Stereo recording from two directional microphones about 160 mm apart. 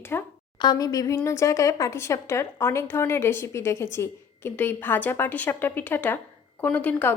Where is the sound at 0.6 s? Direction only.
25° left (ahead or behind).